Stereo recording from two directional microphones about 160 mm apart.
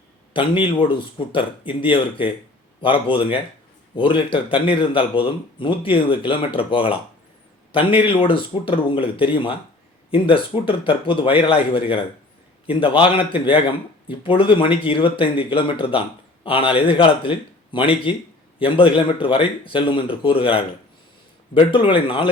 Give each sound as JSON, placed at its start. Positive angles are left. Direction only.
{"t": 0.3, "sound": "speech", "side_deg": 30}